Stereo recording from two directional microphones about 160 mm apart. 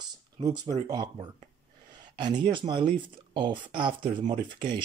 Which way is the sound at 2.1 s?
30° right (ahead or behind).